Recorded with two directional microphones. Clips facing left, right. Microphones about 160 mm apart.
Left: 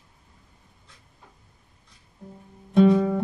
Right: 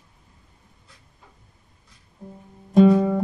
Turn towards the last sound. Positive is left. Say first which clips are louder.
# right 3 dB
turn(degrees=-40)  # may be behind; listen again after turning